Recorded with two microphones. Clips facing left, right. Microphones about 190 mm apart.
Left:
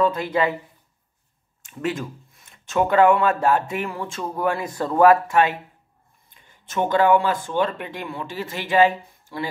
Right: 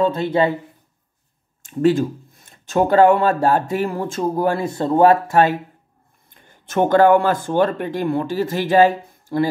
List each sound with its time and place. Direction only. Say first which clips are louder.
0.0 s speech: right 3 dB; 30° right (ahead or behind)
1.6 s speech: right 11 dB; 30° right (ahead or behind)
6.3 s speech: right 6 dB; 50° right (ahead or behind)